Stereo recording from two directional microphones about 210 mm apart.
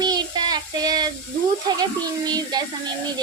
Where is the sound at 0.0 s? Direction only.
20° right (ahead or behind).